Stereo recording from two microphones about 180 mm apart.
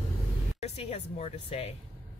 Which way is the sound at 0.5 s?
35° left (ahead or behind).